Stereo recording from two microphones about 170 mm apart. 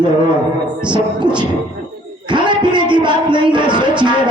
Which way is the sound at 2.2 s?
25° right (ahead or behind).